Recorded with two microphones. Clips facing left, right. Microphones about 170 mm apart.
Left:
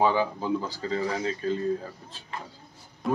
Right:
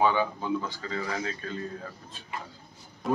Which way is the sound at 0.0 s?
35° left (ahead or behind).